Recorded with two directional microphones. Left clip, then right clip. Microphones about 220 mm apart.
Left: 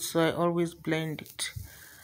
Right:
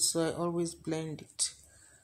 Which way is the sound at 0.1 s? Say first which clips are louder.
Left 6 dB; 10° left (ahead or behind).